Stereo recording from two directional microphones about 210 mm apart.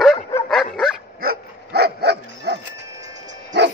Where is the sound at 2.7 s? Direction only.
15° right (ahead or behind).